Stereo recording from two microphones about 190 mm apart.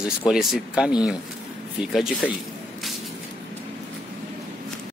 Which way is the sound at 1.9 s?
Centre (ahead or behind).